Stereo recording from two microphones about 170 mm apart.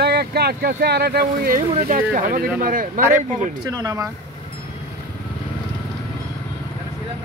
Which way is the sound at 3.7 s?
20° right (ahead or behind).